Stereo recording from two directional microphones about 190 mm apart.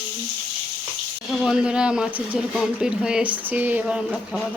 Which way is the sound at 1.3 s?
Centre (ahead or behind).